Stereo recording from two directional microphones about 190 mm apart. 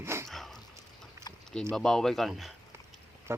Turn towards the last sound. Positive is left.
turn(degrees=-15)  # may be behind; listen again after turning